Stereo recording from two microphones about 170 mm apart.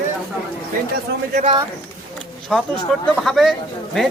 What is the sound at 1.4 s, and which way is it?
Speech, 45° right (ahead or behind).